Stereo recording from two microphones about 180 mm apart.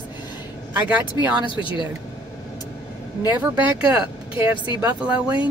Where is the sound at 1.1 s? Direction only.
25° left (ahead or behind).